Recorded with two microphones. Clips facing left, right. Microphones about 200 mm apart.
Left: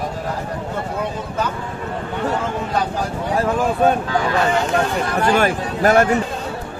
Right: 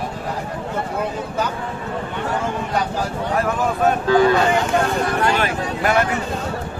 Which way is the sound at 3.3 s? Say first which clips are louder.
Left 3 dB; 30° left (ahead or behind).